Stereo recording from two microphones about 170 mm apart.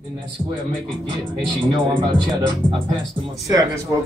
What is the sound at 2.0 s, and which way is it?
Speech, 25° right (ahead or behind).